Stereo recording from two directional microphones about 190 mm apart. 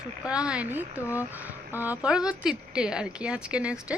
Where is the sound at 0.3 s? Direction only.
5° right (ahead or behind).